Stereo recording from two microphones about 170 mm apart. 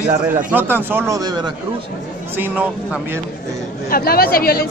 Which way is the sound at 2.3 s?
10° right (ahead or behind).